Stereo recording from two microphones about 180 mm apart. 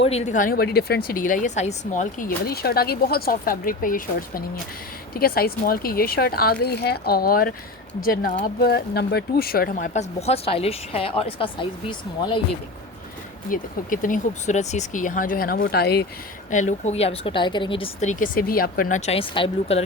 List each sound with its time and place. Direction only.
0.0 s speech: 35° left (ahead or behind)
8.7 s speech: 65° left (ahead or behind); by 12.4 s 25° left (ahead or behind)
13.5 s speech: 50° left (ahead or behind)
15.6 s speech: 65° left (ahead or behind)
16.5 s speech: 45° left (ahead or behind)